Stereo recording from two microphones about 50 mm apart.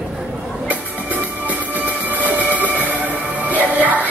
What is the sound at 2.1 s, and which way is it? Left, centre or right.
Music, right.